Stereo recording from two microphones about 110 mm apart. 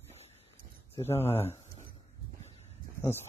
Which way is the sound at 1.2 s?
65° left (ahead or behind).